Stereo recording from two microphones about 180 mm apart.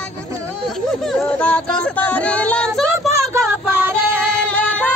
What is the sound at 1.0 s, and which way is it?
Speech, centre (ahead or behind).